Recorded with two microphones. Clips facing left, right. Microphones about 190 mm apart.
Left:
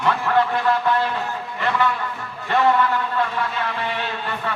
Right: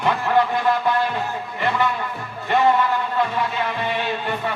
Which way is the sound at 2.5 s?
15° right (ahead or behind).